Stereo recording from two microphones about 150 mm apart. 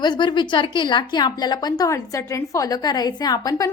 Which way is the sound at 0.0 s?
30° left (ahead or behind).